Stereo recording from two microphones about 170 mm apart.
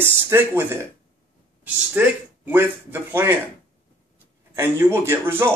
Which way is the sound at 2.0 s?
10° right (ahead or behind).